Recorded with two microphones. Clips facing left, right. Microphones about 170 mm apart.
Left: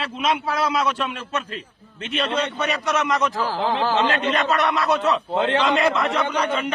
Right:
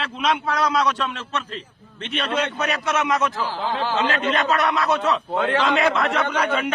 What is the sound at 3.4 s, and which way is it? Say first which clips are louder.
Speech: left 3 dB; 40° left (ahead or behind).